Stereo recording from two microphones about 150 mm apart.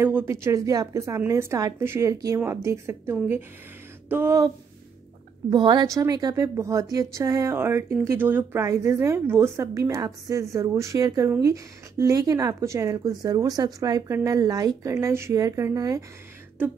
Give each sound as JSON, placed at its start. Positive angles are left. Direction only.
{"t": 0.0, "sound": "a woman's voice", "side_deg": -15}
{"t": 5.5, "sound": "a woman's voice", "side_deg": -30}